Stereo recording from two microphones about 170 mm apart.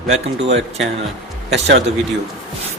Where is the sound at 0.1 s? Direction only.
40° right (ahead or behind).